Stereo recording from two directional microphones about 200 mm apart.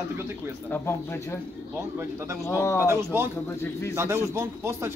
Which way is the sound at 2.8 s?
10° right (ahead or behind).